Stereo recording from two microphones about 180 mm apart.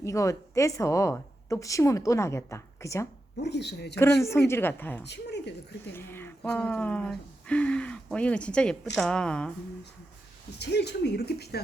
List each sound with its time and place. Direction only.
0.0 s a woman's voice: 15° left (ahead or behind)
3.3 s speech: 70° left (ahead or behind)
4.0 s a woman's voice: 15° left (ahead or behind)
5.0 s speech: 70° left (ahead or behind)
5.9 s a woman's voice: 10° left (ahead or behind)
10.6 s speech: 65° left (ahead or behind)